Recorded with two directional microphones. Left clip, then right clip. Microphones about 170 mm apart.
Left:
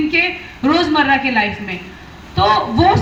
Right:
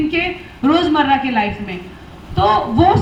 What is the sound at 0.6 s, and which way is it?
A woman's voice, 25° right (ahead or behind).